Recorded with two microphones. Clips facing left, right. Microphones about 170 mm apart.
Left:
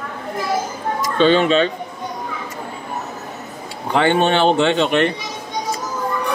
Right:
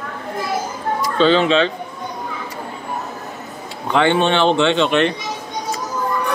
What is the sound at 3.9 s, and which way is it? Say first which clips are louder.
Speech: even; 45° left (ahead or behind).